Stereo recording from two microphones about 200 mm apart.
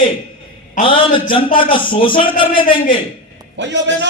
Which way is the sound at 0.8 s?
25° left (ahead or behind).